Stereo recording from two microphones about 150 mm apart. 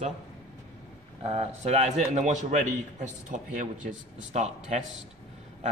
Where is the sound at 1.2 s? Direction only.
45° right (ahead or behind).